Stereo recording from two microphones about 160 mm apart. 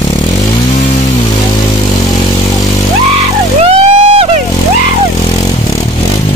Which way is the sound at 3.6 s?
40° right (ahead or behind).